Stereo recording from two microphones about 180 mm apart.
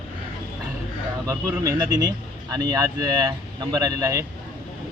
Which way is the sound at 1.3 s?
20° right (ahead or behind).